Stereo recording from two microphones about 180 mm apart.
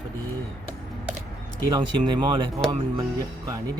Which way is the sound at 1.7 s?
25° right (ahead or behind).